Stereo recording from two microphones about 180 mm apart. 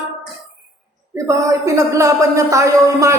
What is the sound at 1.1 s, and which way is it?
Speech, 15° right (ahead or behind).